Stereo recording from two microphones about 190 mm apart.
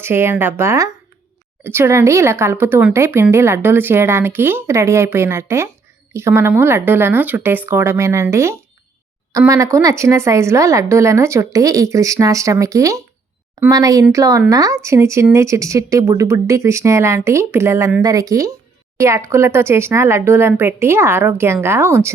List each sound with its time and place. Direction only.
0.0 s a woman's voice: 10° right (ahead or behind)